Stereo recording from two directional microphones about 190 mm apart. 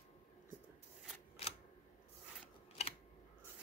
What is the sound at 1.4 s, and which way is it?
Camera, 30° left (ahead or behind).